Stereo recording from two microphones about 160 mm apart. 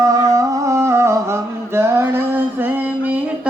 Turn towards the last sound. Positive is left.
turn(degrees=-10)  # may be behind; listen again after turning